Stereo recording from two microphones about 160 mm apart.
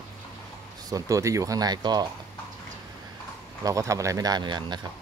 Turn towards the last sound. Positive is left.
turn(degrees=-30)  # may be behind; listen again after turning